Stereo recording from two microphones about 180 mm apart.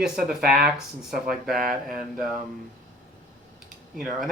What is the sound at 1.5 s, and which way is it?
Speech, 50° right (ahead or behind).